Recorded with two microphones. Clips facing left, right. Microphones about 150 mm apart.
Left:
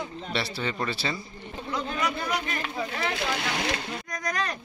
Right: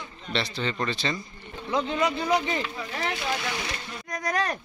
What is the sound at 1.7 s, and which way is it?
Speech, 25° right (ahead or behind).